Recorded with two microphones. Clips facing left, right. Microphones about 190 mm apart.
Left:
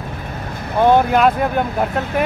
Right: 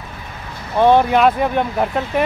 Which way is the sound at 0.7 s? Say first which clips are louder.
Right 1 dB; 5° left (ahead or behind).